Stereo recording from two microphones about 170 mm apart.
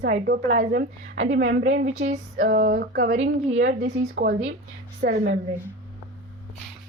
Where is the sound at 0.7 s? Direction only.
90° right.